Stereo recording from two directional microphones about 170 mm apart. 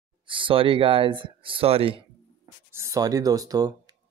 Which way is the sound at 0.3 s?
30° right (ahead or behind).